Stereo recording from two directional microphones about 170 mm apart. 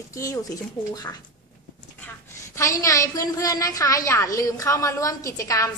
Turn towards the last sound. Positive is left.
turn(degrees=20)  # may be behind; listen again after turning